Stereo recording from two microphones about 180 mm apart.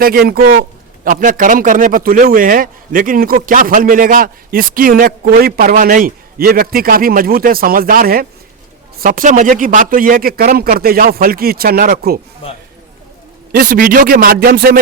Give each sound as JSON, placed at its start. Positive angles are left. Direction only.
{"t": 0.0, "sound": "speech", "side_deg": -55}
{"t": 1.0, "sound": "a man's voice", "side_deg": -45}
{"t": 13.5, "sound": "a man's voice", "side_deg": -50}